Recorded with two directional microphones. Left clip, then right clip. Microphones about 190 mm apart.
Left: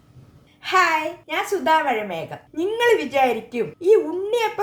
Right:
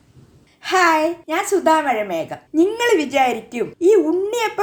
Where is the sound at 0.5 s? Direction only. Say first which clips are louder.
Right 3 dB; 35° right (ahead or behind).